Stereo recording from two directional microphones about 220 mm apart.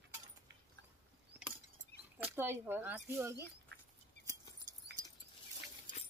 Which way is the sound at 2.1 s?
10° right (ahead or behind).